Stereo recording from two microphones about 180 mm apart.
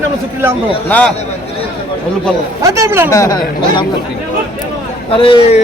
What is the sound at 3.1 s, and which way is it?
Speech, 15° left (ahead or behind).